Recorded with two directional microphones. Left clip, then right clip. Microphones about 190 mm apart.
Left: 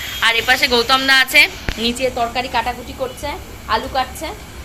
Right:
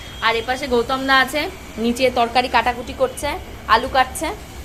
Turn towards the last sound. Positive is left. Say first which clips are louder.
# right 3 dB
turn(degrees=-40)  # may be behind; listen again after turning